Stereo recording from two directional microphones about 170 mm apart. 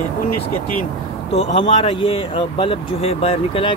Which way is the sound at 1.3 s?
35° left (ahead or behind).